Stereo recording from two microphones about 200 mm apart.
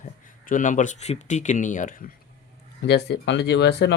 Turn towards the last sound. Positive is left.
turn(degrees=55)  # may be behind; listen again after turning